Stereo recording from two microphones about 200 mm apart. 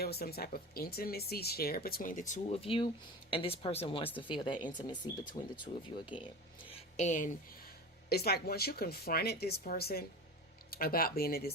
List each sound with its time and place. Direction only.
0.0 s speech: 50° left (ahead or behind); by 5.8 s 30° left (ahead or behind)
6.7 s a sound: 30° left (ahead or behind)
8.1 s speech: 50° left (ahead or behind)